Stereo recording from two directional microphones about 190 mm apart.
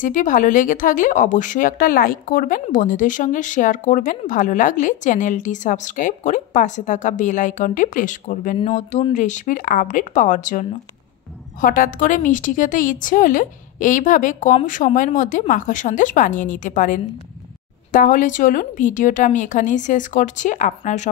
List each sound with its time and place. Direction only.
0.0 s a woman's voice: 45° left (ahead or behind)